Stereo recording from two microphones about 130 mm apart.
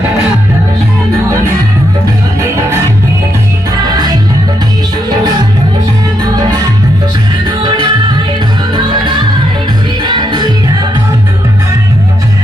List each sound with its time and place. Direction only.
3.9 s music: 30° right (ahead or behind)
7.6 s music: 35° right (ahead or behind)